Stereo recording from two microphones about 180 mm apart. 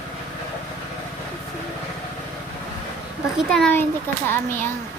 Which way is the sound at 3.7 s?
10° left (ahead or behind).